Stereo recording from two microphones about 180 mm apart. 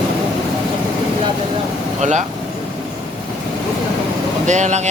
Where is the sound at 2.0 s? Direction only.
40° right (ahead or behind).